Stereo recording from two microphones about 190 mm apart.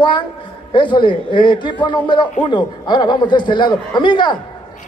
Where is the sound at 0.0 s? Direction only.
25° left (ahead or behind).